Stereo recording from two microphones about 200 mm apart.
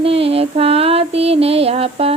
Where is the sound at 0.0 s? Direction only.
30° right (ahead or behind).